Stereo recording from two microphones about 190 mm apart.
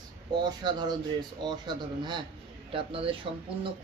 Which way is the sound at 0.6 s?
20° right (ahead or behind).